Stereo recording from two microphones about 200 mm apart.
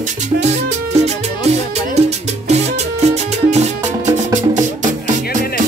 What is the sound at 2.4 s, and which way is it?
Music, 35° right (ahead or behind).